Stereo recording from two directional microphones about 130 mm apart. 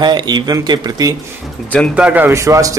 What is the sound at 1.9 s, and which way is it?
Speech, 10° right (ahead or behind).